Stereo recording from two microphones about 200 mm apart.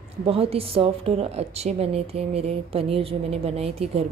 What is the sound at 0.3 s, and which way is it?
A woman's voice, 30° right (ahead or behind).